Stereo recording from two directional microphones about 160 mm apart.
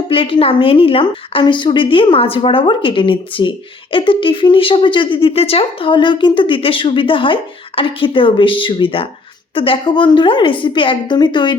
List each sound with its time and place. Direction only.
0.1 s speech: 35° left (ahead or behind)